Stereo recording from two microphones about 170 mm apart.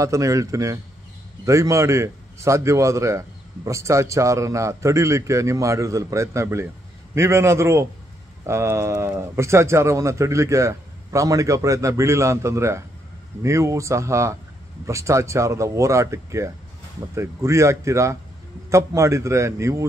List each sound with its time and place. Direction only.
0.0 s a man's voice: 20° right (ahead or behind)